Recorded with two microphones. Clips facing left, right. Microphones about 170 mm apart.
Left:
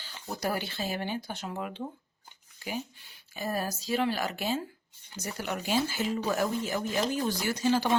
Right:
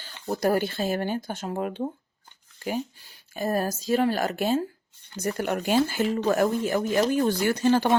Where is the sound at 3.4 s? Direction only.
45° right (ahead or behind).